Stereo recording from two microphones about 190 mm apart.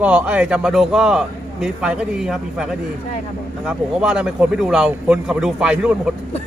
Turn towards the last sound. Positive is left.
turn(degrees=-5)  # may be behind; listen again after turning